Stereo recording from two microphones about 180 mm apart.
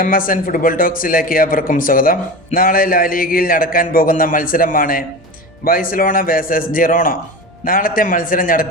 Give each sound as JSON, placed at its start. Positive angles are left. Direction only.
{"t": 0.0, "sound": "speech", "side_deg": 50}